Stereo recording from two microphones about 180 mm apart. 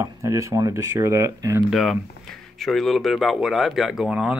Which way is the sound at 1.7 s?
Centre (ahead or behind).